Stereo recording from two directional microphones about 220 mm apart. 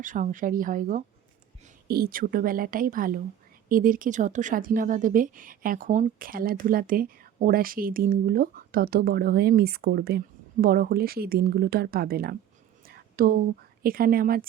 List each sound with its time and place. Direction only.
0.0 s a woman's voice: 35° right (ahead or behind)
12.8 s whispering: 40° right (ahead or behind)
13.8 s a woman's voice: 40° right (ahead or behind)